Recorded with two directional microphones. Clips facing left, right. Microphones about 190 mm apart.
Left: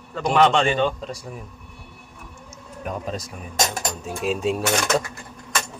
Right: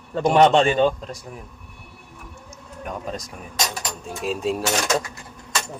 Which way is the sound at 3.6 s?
50° left (ahead or behind).